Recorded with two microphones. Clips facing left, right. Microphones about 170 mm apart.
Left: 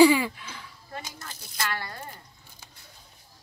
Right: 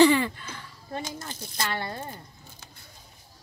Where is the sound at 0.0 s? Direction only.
5° left (ahead or behind).